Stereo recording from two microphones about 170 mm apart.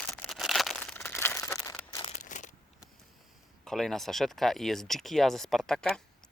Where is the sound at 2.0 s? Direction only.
35° left (ahead or behind).